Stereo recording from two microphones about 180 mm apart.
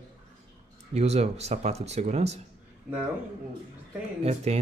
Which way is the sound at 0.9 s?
35° right (ahead or behind).